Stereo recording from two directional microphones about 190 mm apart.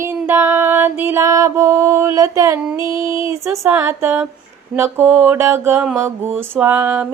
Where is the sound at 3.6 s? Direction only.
15° right (ahead or behind).